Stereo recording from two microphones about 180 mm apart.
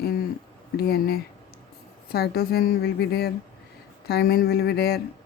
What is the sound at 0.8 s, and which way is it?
Speech, 60° left (ahead or behind).